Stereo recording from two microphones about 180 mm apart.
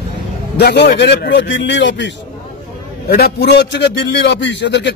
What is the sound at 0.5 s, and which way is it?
A man's voice, 65° left (ahead or behind).